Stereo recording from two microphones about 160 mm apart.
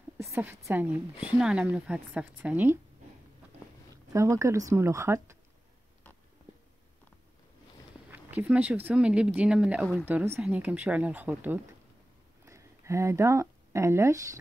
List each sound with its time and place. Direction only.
0.2 s a sound: 15° right (ahead or behind)
0.7 s a woman's voice: 10° right (ahead or behind)
3.9 s speech: 20° right (ahead or behind)
8.1 s a woman's voice: 10° right (ahead or behind)